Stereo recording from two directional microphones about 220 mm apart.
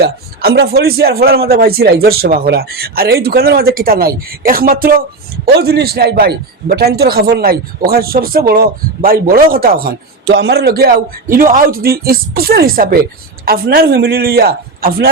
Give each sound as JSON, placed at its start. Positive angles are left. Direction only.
{"t": 0.0, "sound": "a man's voice", "side_deg": -45}